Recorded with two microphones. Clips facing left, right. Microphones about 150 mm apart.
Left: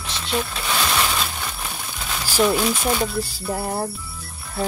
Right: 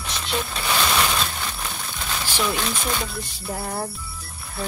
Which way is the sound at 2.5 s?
5° left (ahead or behind).